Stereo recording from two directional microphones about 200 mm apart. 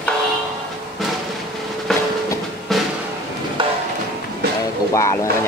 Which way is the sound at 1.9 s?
Centre (ahead or behind).